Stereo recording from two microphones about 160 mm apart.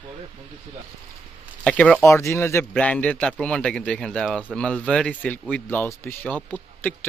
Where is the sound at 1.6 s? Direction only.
5° left (ahead or behind).